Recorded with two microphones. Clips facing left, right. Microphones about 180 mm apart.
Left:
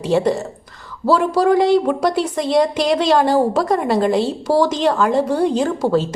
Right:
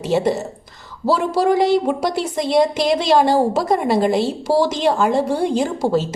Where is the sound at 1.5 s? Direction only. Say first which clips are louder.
Left 1 dB; 25° right (ahead or behind).